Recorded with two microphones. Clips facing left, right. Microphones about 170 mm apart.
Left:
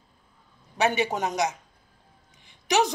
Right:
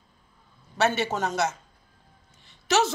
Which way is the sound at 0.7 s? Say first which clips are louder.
Even; 15° left (ahead or behind).